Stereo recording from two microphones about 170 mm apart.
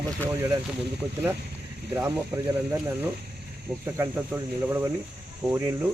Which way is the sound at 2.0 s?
10° right (ahead or behind).